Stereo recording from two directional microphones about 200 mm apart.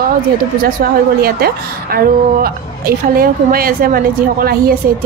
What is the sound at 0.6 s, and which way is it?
A woman's voice, 50° right (ahead or behind).